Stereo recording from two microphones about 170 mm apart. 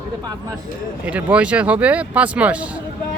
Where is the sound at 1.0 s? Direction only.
10° right (ahead or behind).